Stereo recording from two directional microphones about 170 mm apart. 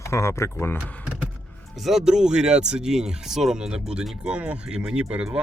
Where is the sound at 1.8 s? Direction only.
Centre (ahead or behind).